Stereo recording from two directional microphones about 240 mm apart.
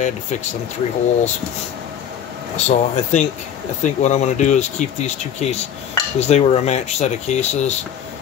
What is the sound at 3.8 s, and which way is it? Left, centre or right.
Speech, left.